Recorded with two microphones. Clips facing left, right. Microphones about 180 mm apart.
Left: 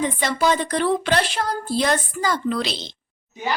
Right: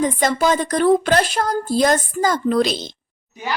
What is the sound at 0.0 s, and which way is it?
Speech, 45° right (ahead or behind).